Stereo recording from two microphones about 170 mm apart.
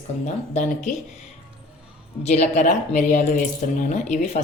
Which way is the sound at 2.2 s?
40° left (ahead or behind).